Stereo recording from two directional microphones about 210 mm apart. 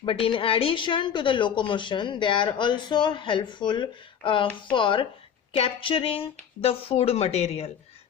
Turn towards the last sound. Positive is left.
turn(degrees=30)  # may be behind; listen again after turning